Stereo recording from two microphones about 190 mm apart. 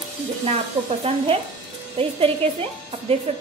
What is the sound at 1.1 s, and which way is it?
A woman's voice, 30° right (ahead or behind).